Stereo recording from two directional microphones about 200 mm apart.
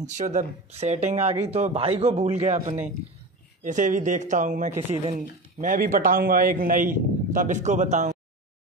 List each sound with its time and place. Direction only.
0.0 s speech: 35° right (ahead or behind)